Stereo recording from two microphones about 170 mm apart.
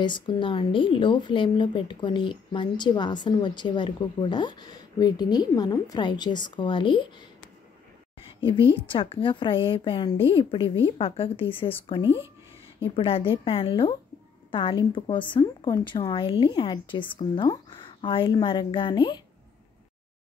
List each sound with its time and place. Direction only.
0.0 s speech: 30° left (ahead or behind)
8.3 s a sound: 30° left (ahead or behind)
8.6 s a woman's voice: 30° left (ahead or behind)